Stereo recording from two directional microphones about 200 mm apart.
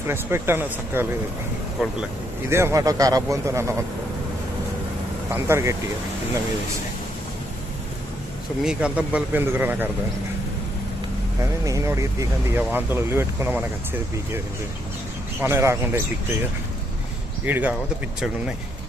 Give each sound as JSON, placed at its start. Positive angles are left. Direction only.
{"t": 0.1, "sound": "speech", "side_deg": -10}
{"t": 5.3, "sound": "speech", "side_deg": -15}
{"t": 8.6, "sound": "speech", "side_deg": -5}
{"t": 11.6, "sound": "speech", "side_deg": -15}
{"t": 17.4, "sound": "speech", "side_deg": -10}